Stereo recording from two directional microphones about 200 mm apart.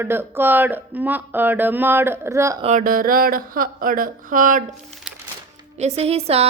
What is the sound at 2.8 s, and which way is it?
Speech, 45° right (ahead or behind).